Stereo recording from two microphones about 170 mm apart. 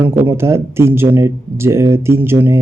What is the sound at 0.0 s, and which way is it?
Speech, 10° right (ahead or behind).